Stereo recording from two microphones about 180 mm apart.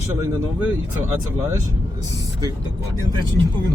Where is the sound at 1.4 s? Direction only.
15° right (ahead or behind).